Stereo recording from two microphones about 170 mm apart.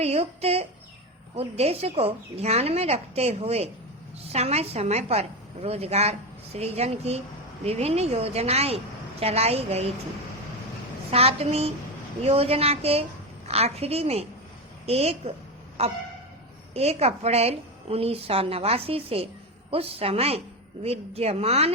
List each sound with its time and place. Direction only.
0.0 s a woman's voice: 35° right (ahead or behind)
11.1 s a woman's voice: 35° right (ahead or behind)